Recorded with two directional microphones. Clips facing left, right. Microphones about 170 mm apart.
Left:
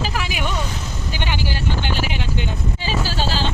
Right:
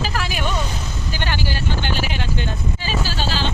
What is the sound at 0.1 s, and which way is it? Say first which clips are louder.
Vehicle: right 1 dB; 15° left (ahead or behind).